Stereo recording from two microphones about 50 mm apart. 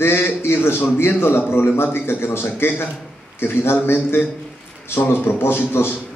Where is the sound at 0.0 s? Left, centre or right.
Left.